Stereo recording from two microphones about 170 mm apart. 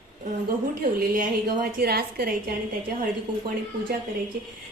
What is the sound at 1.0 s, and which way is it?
A woman's voice, 60° right (ahead or behind).